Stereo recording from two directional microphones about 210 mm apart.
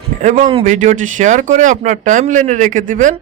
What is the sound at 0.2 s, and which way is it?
A man's voice, 35° right (ahead or behind).